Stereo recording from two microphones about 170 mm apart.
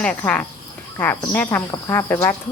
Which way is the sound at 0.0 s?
5° left (ahead or behind).